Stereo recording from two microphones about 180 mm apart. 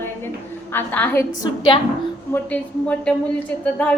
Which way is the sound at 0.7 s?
10° left (ahead or behind).